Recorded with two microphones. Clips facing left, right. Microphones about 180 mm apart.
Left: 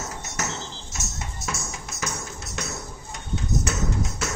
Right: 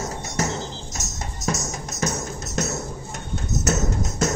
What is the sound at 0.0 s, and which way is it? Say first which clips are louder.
Music: right 6 dB; 35° right (ahead or behind).